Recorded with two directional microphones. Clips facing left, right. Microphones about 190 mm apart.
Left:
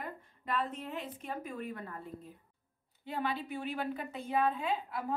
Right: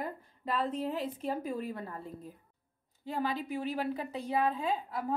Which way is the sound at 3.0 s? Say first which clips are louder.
Right 2 dB; 40° right (ahead or behind).